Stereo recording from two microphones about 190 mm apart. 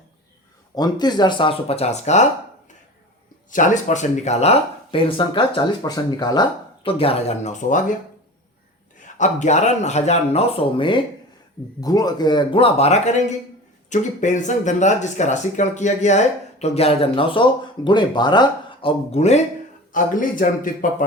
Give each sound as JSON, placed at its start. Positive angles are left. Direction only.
{"t": 0.8, "sound": "speech", "side_deg": 20}
{"t": 3.5, "sound": "speech", "side_deg": 40}
{"t": 9.0, "sound": "speech", "side_deg": 40}